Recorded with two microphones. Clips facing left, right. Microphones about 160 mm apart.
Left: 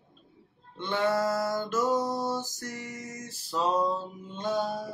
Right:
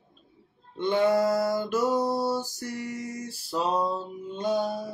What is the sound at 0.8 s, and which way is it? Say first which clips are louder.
Music: right 5 dB; 15° right (ahead or behind).